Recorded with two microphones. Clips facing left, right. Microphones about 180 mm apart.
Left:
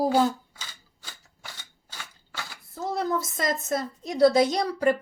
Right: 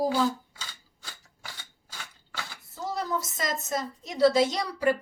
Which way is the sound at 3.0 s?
55° left (ahead or behind).